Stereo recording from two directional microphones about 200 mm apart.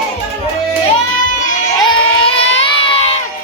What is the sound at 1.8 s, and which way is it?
Crowd, 30° left (ahead or behind).